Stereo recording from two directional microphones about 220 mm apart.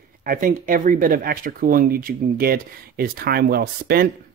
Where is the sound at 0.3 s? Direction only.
40° right (ahead or behind).